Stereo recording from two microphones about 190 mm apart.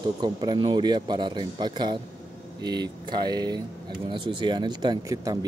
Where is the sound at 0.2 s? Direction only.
20° right (ahead or behind).